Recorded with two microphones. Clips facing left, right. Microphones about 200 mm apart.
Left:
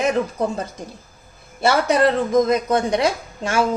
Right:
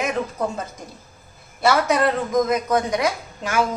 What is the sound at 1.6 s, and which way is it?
Speech, 30° left (ahead or behind).